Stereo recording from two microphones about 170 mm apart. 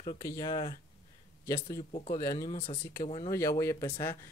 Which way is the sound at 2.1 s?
20° left (ahead or behind).